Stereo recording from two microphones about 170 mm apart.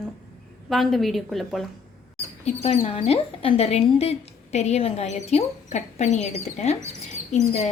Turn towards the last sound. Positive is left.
turn(degrees=40)  # may be behind; listen again after turning